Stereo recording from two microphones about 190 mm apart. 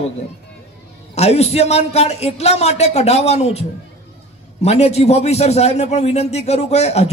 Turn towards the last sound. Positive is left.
turn(degrees=35)  # may be behind; listen again after turning